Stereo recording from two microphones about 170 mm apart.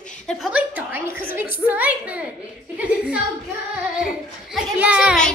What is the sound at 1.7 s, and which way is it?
A woman's voice, 10° right (ahead or behind).